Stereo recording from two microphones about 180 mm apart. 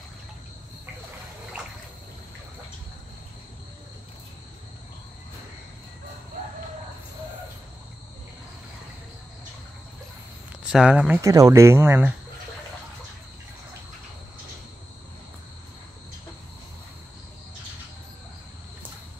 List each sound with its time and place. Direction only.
10.7 s speech: 5° right (ahead or behind)
11.1 s speech: 20° right (ahead or behind)